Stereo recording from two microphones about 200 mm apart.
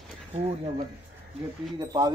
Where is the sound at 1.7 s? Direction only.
20° right (ahead or behind).